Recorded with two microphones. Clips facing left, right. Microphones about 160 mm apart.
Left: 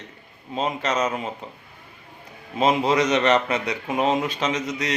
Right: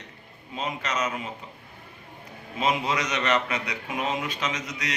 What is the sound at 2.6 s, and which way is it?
Speech, 30° left (ahead or behind).